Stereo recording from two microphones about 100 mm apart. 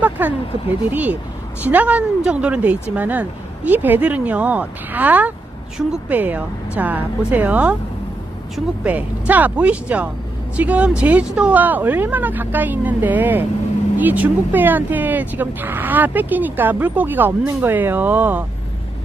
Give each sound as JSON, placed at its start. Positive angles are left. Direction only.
{"t": 0.0, "sound": "speech", "side_deg": -20}